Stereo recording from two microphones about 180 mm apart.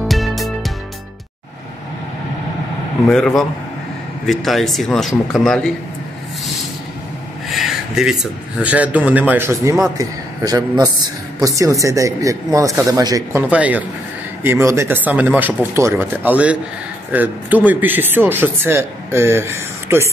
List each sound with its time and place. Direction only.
0.1 s music: centre (ahead or behind)
3.1 s a man's voice: 5° left (ahead or behind)
7.4 s a man's voice: centre (ahead or behind); by 13.4 s 20° right (ahead or behind)
13.5 s speech: 10° right (ahead or behind)